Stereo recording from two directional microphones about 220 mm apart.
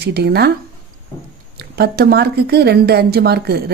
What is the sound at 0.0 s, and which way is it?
Speech, 45° right (ahead or behind).